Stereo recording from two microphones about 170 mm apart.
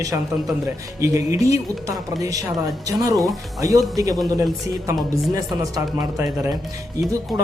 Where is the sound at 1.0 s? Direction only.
20° right (ahead or behind).